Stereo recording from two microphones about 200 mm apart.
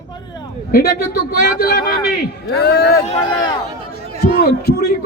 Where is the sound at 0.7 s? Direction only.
50° left (ahead or behind).